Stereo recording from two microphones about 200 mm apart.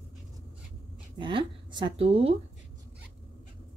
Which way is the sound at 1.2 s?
25° right (ahead or behind).